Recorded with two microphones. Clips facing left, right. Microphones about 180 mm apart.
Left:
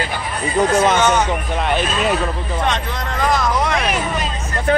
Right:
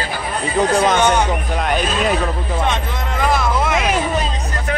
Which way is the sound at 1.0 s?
10° right (ahead or behind).